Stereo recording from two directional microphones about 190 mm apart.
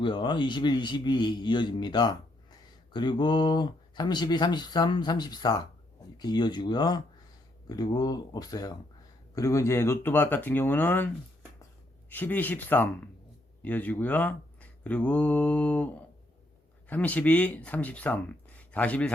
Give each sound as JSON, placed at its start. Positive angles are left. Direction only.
{"t": 0.0, "sound": "a man's voice", "side_deg": 25}